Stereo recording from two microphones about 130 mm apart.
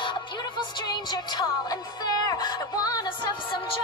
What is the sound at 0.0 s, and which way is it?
Music, 35° left (ahead or behind).